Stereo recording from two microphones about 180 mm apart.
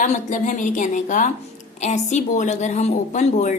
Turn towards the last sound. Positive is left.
turn(degrees=40)  # may be behind; listen again after turning